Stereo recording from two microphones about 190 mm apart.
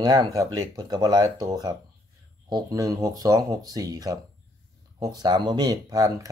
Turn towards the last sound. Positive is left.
turn(degrees=-20)  # may be behind; listen again after turning